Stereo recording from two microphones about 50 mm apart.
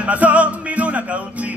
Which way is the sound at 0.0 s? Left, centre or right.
Right.